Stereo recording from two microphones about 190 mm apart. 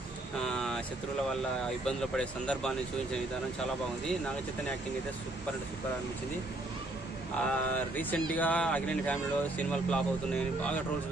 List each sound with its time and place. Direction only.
0.5 s vehicle: 5° left (ahead or behind)
1.9 s speech: 5° left (ahead or behind)
7.3 s speech: 10° left (ahead or behind)